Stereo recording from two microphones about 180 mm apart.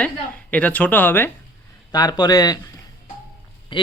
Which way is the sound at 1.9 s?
20° left (ahead or behind).